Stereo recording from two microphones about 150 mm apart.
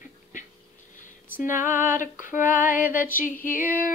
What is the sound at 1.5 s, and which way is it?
Female singing, 60° left (ahead or behind).